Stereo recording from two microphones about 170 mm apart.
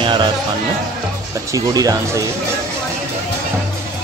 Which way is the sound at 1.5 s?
20° right (ahead or behind).